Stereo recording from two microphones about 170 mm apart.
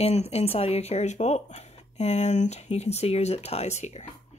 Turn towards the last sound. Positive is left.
turn(degrees=40)  # may be behind; listen again after turning